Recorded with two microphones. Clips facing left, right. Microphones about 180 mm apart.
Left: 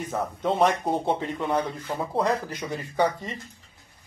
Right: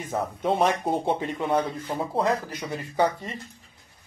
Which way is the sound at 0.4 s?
15° right (ahead or behind).